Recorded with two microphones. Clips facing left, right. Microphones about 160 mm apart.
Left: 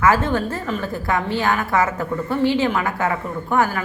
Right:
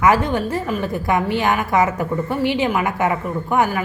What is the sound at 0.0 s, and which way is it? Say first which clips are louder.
A woman's voice: right 1 dB; 15° right (ahead or behind).